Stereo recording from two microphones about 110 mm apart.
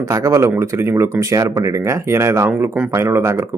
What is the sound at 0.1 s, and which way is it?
Speech, 25° right (ahead or behind).